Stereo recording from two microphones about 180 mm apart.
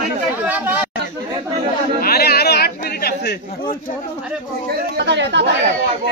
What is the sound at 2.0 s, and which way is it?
Chatter, 60° left (ahead or behind).